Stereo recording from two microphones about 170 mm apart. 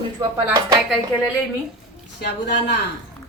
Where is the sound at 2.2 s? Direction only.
70° left (ahead or behind).